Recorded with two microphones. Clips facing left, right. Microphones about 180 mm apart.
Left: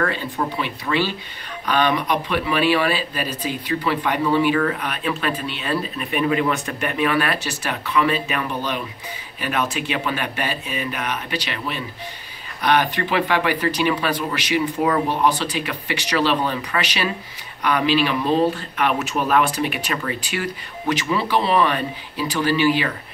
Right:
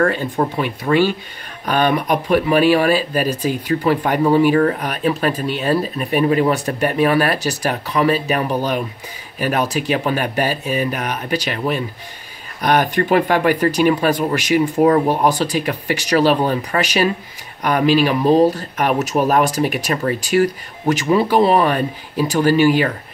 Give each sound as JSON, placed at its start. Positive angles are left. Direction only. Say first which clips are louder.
{"t": 0.0, "sound": "speech", "louder": "right 6 dB", "side_deg": -45}